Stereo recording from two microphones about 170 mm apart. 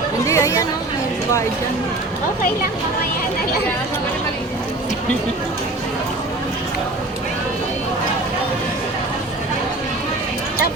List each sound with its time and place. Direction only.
0.3 s speech: 20° left (ahead or behind)